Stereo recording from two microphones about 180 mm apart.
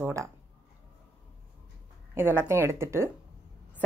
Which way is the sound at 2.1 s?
15° right (ahead or behind).